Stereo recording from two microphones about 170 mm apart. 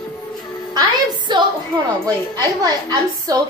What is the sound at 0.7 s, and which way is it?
A woman's voice, 25° right (ahead or behind).